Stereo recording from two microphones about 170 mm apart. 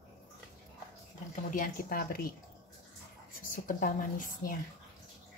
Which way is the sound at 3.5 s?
50° left (ahead or behind).